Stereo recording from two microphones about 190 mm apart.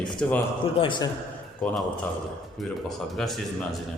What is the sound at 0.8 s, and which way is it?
Speech, 25° left (ahead or behind).